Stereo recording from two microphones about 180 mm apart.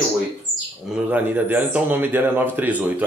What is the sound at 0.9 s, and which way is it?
A man's voice, 10° right (ahead or behind).